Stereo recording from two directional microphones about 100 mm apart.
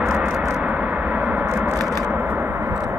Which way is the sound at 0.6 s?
15° right (ahead or behind).